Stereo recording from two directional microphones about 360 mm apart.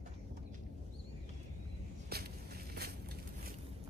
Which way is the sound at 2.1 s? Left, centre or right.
Right.